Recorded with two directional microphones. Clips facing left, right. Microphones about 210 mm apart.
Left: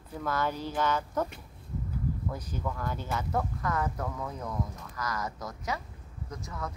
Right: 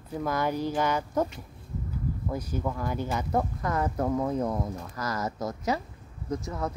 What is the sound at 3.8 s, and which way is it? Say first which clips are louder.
Speech: right 7 dB; 40° right (ahead or behind).